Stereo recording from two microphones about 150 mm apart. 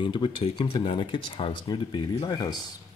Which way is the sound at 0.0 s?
35° left (ahead or behind).